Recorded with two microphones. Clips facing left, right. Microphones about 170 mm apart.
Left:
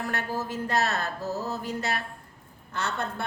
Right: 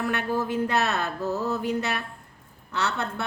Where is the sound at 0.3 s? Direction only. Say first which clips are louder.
Right 2 dB; 65° right (ahead or behind).